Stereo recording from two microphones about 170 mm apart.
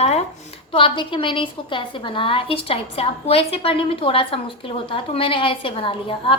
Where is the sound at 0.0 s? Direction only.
40° left (ahead or behind).